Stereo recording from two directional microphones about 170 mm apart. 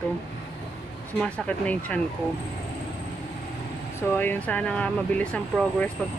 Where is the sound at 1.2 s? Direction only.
10° left (ahead or behind).